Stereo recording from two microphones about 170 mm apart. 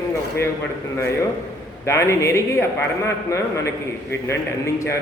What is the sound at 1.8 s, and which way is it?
Speech, 15° left (ahead or behind).